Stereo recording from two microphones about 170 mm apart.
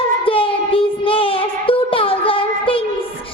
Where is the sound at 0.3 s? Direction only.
30° left (ahead or behind).